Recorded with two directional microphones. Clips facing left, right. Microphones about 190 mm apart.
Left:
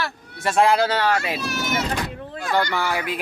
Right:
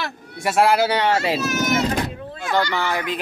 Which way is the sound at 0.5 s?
5° right (ahead or behind).